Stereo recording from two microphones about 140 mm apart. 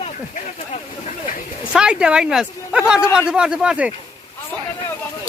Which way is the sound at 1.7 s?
5° right (ahead or behind).